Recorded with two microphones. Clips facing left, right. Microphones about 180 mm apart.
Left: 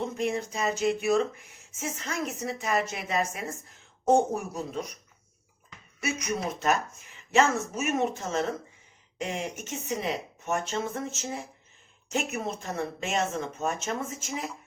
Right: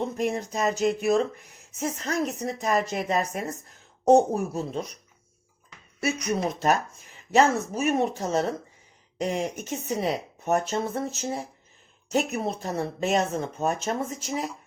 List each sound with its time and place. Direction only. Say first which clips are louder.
0.2 s speech: right 2 dB; 40° right (ahead or behind)
6.0 s speech: right 4 dB; 35° right (ahead or behind)